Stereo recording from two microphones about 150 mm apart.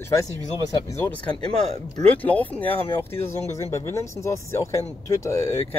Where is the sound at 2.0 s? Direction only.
10° left (ahead or behind).